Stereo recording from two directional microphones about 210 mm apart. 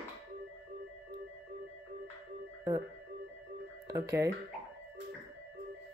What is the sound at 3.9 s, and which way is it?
Speech, 15° right (ahead or behind).